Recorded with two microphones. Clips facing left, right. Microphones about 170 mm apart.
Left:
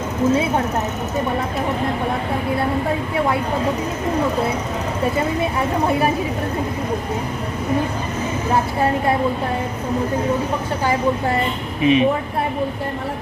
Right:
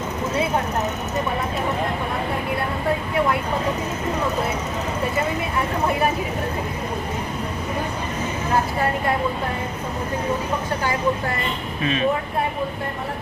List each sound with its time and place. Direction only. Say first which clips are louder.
11.8 s speech: left 9 dB; 15° left (ahead or behind)